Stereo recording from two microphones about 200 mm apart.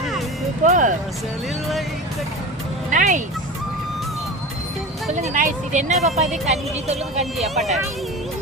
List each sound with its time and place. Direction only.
0.6 s speech: 40° right (ahead or behind)
2.9 s speech: 40° right (ahead or behind)
5.1 s speech: 40° right (ahead or behind)
7.5 s speech: centre (ahead or behind)